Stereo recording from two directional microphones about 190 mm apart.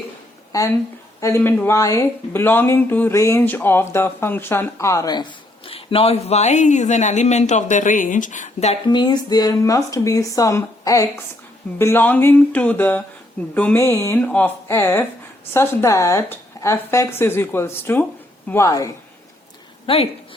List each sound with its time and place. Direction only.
0.5 s speech: 20° left (ahead or behind)
19.9 s speech: 25° left (ahead or behind)